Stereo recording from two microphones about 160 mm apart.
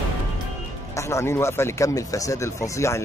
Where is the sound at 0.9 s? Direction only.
15° left (ahead or behind).